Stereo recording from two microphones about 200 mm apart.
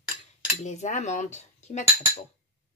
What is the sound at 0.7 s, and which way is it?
Speech, 35° left (ahead or behind).